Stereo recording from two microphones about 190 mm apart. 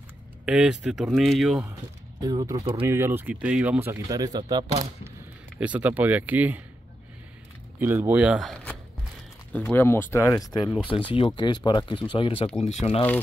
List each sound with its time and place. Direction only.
0.5 s speech: 5° right (ahead or behind)
2.2 s speech: 20° right (ahead or behind)
5.6 s speech: 10° right (ahead or behind)
7.8 s speech: 10° right (ahead or behind); by 13.0 s 30° left (ahead or behind)